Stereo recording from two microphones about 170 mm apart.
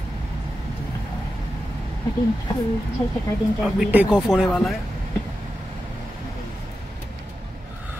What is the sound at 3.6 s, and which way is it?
Speech, 5° right (ahead or behind).